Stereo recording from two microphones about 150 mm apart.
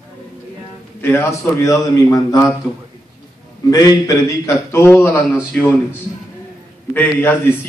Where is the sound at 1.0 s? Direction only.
15° left (ahead or behind).